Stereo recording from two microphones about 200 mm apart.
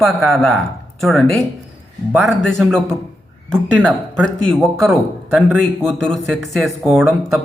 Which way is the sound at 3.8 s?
5° left (ahead or behind).